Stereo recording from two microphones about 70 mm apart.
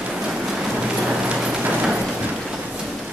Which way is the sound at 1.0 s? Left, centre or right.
Centre.